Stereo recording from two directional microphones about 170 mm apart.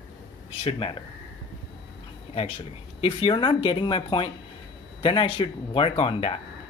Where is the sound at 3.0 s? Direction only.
30° left (ahead or behind).